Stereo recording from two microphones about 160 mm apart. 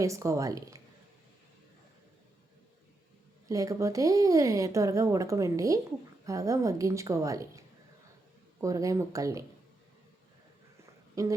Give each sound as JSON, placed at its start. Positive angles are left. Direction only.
{"t": 0.0, "sound": "speech", "side_deg": -20}
{"t": 3.5, "sound": "speech", "side_deg": -20}
{"t": 8.6, "sound": "speech", "side_deg": -20}
{"t": 11.1, "sound": "a woman's voice", "side_deg": -20}